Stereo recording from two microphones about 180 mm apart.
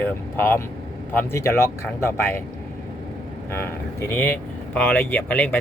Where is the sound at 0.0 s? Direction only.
10° left (ahead or behind).